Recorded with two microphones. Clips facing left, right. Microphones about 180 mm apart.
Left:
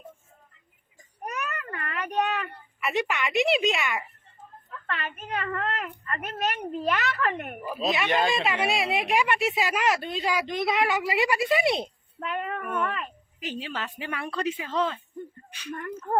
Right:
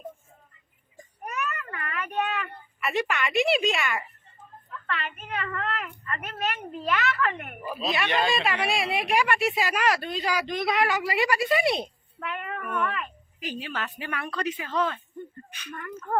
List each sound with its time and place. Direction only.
1.2 s a sound: 35° left (ahead or behind)
2.8 s speech: 20° left (ahead or behind)
4.9 s a child's voice: 40° left (ahead or behind)
8.1 s speech: 20° left (ahead or behind)
12.2 s a child's voice: 35° left (ahead or behind)
13.4 s speech: 25° left (ahead or behind)